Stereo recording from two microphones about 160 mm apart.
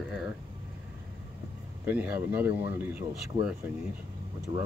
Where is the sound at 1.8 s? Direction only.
10° right (ahead or behind).